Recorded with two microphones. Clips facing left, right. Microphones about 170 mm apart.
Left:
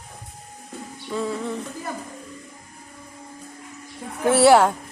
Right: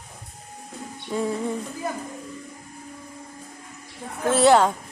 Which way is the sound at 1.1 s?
15° right (ahead or behind).